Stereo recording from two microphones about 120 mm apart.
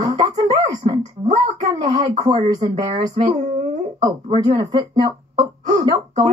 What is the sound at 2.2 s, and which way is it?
Music, 40° right (ahead or behind).